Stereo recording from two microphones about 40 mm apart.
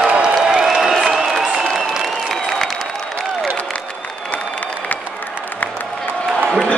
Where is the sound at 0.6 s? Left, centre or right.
Centre.